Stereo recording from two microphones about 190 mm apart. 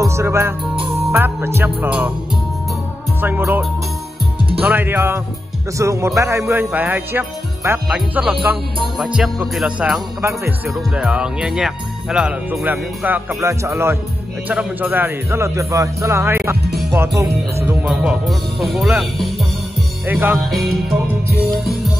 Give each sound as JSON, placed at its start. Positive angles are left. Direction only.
{"t": 0.0, "sound": "music", "side_deg": -15}
{"t": 1.1, "sound": "speech", "side_deg": -10}
{"t": 3.2, "sound": "speech", "side_deg": -10}
{"t": 17.8, "sound": "speech", "side_deg": 0}